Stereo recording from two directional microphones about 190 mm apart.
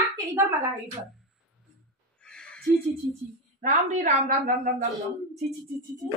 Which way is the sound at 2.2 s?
5° left (ahead or behind).